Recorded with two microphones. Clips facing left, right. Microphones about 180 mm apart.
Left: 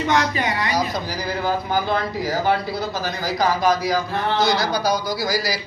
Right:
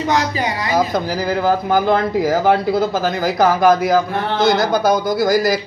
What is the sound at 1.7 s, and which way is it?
Speech, 50° right (ahead or behind).